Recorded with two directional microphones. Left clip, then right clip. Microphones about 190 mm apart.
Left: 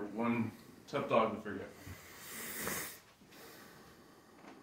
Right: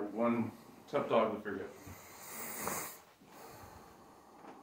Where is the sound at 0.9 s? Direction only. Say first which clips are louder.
Right 3 dB; 35° left (ahead or behind).